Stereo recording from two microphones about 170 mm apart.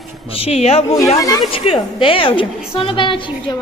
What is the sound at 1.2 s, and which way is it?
A woman's voice, 25° left (ahead or behind).